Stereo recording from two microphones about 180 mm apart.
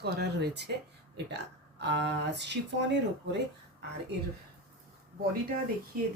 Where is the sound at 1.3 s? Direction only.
75° right (ahead or behind).